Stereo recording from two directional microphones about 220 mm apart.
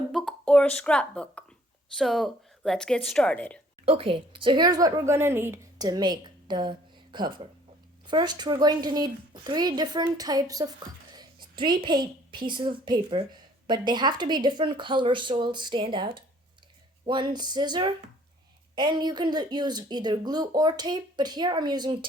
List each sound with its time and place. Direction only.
0.1 s a sound: centre (ahead or behind)
2.0 s a woman's voice: centre (ahead or behind)
3.8 s a woman's voice: 25° right (ahead or behind)